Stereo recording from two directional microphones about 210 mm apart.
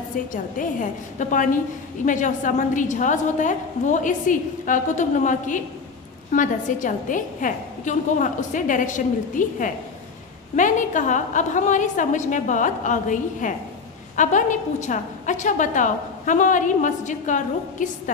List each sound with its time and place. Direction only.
0.3 s a woman's voice: 40° left (ahead or behind)